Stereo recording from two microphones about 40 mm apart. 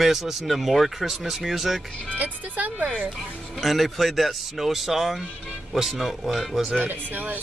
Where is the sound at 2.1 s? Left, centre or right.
Right.